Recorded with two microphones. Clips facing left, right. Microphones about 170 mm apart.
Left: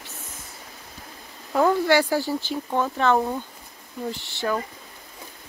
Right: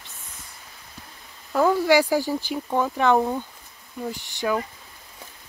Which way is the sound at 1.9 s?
10° right (ahead or behind).